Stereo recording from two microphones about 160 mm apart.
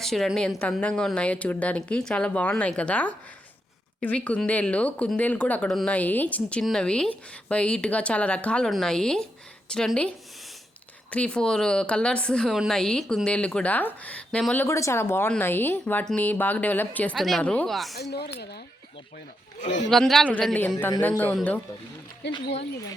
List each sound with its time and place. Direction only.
0.0 s a woman's voice: centre (ahead or behind)
11.1 s a woman's voice: 5° left (ahead or behind)
17.9 s speech: 90° left
19.9 s a man's voice: centre (ahead or behind)
22.2 s speech: 90° left